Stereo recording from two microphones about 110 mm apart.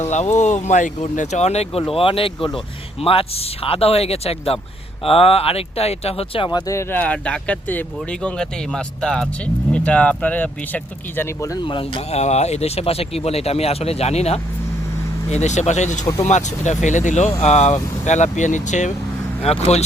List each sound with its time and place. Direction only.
0.0 s speech: 90° left; by 1.8 s 75° left (ahead or behind)
1.9 s speech: 55° left (ahead or behind)
6.5 s speech: 30° left (ahead or behind)
6.9 s speech: 15° left (ahead or behind)
11.2 s speech: 30° left (ahead or behind)
11.6 s speech: 50° left (ahead or behind); by 14.4 s 75° left (ahead or behind)
15.3 s speech: 90° left
19.4 s speech: 70° left (ahead or behind)